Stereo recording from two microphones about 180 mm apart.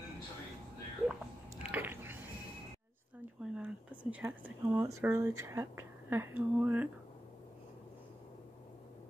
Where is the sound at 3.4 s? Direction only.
5° right (ahead or behind).